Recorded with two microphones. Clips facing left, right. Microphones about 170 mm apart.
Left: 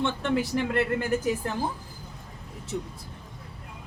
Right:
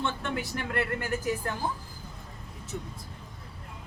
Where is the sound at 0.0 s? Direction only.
25° left (ahead or behind).